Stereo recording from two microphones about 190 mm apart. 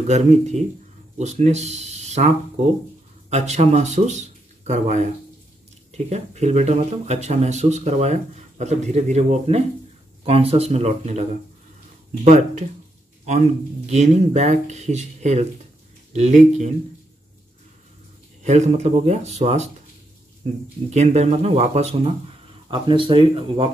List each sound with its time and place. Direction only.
0.1 s speech: 35° right (ahead or behind)
12.3 s speech: 40° right (ahead or behind)
13.8 s speech: 35° right (ahead or behind)
18.4 s speech: 35° right (ahead or behind)
20.9 s speech: 35° right (ahead or behind)